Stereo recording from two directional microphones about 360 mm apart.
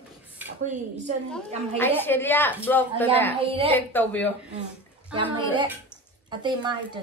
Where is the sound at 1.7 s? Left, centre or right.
Centre.